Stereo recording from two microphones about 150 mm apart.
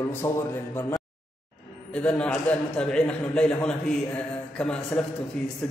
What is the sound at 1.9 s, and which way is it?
A man's voice, 5° left (ahead or behind).